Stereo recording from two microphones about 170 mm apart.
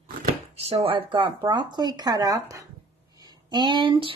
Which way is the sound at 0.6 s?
35° right (ahead or behind).